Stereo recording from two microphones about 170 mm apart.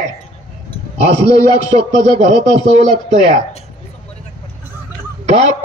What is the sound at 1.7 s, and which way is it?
Speech, 40° right (ahead or behind).